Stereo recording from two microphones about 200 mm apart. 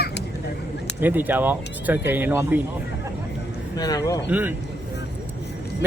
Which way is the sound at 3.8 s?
20° left (ahead or behind).